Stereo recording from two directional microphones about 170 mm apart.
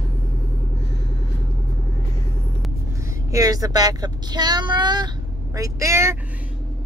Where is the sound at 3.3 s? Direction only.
20° right (ahead or behind).